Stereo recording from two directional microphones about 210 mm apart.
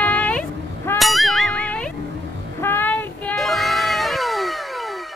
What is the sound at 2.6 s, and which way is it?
Child singing, 10° left (ahead or behind).